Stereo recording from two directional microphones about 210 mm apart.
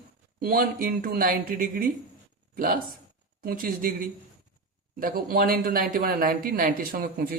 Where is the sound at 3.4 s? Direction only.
40° right (ahead or behind).